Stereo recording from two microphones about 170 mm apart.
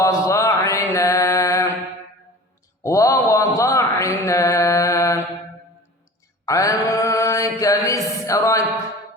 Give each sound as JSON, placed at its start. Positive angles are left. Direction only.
{"t": 0.0, "sound": "mantra", "side_deg": 20}
{"t": 2.8, "sound": "mantra", "side_deg": 20}
{"t": 6.4, "sound": "mantra", "side_deg": 20}